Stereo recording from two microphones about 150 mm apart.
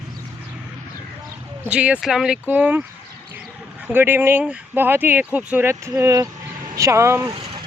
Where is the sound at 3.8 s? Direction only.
15° right (ahead or behind).